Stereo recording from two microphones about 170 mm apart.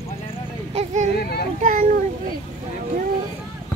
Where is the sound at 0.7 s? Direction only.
40° right (ahead or behind).